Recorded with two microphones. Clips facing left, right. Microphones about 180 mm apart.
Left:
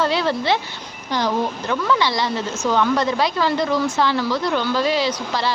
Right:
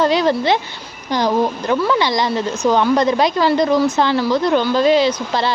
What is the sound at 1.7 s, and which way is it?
A woman's voice, 20° right (ahead or behind).